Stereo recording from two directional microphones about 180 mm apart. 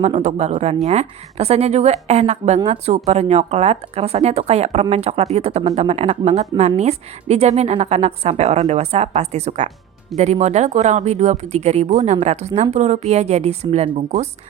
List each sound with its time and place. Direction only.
0.0 s a woman's voice: 40° right (ahead or behind)